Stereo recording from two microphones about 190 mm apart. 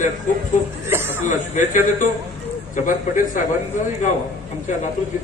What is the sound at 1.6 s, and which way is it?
A man's voice, 40° left (ahead or behind).